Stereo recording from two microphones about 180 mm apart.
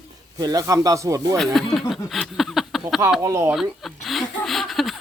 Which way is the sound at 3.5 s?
Centre (ahead or behind).